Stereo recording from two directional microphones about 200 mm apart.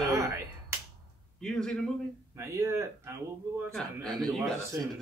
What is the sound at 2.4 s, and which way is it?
Speech, 15° right (ahead or behind).